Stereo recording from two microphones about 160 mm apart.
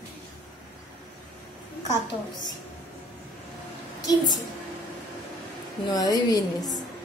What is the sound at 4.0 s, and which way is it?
Speech, 25° left (ahead or behind).